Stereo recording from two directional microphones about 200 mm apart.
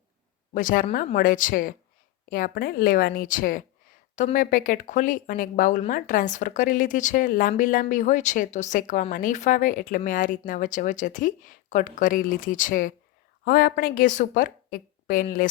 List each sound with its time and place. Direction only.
0.5 s a woman's voice: 45° left (ahead or behind)